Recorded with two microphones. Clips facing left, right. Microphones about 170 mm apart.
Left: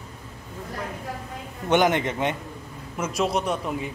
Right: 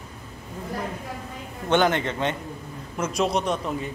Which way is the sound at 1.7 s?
15° left (ahead or behind).